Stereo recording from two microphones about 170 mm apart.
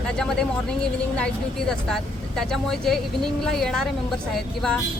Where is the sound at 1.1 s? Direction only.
5° left (ahead or behind).